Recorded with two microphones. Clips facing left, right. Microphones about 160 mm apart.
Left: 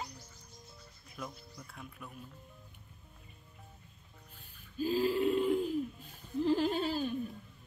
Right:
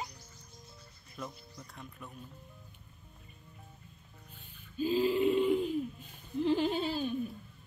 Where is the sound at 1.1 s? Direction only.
Centre (ahead or behind).